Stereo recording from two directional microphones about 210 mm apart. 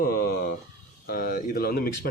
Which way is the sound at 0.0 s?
45° left (ahead or behind).